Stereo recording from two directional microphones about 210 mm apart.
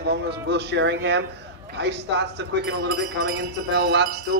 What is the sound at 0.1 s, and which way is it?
Speech, 55° right (ahead or behind).